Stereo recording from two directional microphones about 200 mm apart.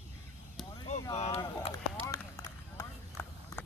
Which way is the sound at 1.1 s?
30° left (ahead or behind).